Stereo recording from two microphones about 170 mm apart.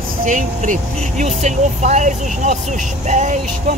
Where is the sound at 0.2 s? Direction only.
50° right (ahead or behind).